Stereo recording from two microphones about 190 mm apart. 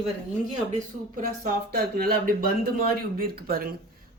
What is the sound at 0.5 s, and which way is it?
A woman's voice, 40° right (ahead or behind).